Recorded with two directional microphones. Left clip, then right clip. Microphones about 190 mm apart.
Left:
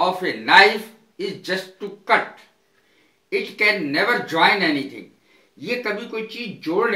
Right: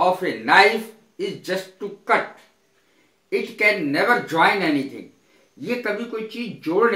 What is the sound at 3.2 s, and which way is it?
Speech, 15° right (ahead or behind).